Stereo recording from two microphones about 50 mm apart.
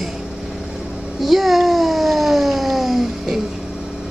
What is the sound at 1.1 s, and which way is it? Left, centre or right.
Cat, centre.